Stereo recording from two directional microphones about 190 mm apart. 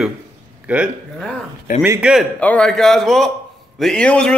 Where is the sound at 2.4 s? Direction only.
5° left (ahead or behind).